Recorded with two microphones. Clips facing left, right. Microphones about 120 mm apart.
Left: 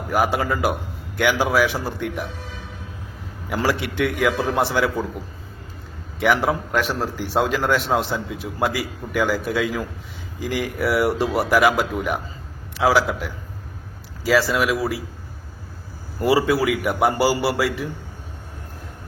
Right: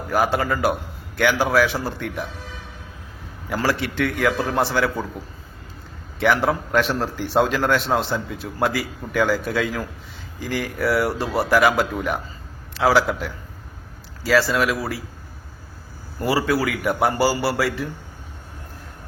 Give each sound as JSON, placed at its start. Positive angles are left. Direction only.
{"t": 0.1, "sound": "a man's voice", "side_deg": 10}
{"t": 3.5, "sound": "a man's voice", "side_deg": 15}
{"t": 6.1, "sound": "a man's voice", "side_deg": 10}
{"t": 16.2, "sound": "speech", "side_deg": 20}
{"t": 16.8, "sound": "a man's voice", "side_deg": 10}